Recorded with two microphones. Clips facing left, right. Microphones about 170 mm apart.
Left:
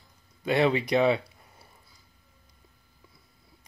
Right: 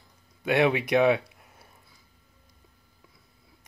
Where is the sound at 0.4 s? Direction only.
10° right (ahead or behind).